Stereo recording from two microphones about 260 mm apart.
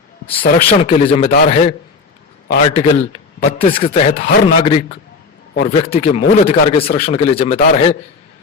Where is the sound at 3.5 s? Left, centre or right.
Left.